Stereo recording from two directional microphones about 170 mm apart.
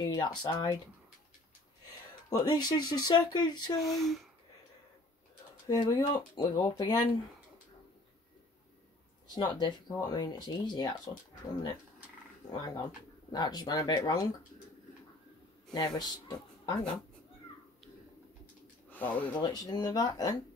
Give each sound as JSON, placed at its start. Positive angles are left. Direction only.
{"t": 0.1, "sound": "speech", "side_deg": 25}
{"t": 2.2, "sound": "speech", "side_deg": 20}
{"t": 3.8, "sound": "speech", "side_deg": 0}
{"t": 5.7, "sound": "speech", "side_deg": 25}
{"t": 9.3, "sound": "speech", "side_deg": 25}
{"t": 12.5, "sound": "speech", "side_deg": 20}
{"t": 15.7, "sound": "speech", "side_deg": 25}
{"t": 18.9, "sound": "speech", "side_deg": 10}
{"t": 19.4, "sound": "speech", "side_deg": 25}